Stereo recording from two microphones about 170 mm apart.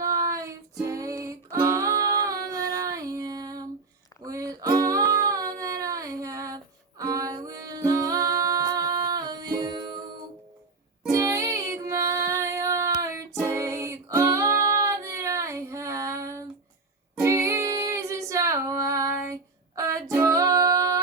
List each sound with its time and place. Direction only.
0.0 s music: 20° right (ahead or behind)
4.8 s humming: 20° right (ahead or behind)
7.0 s music: 20° right (ahead or behind)
11.1 s music: 20° right (ahead or behind)